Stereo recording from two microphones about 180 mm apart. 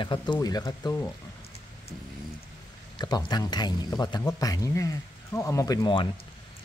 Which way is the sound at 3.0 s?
20° left (ahead or behind).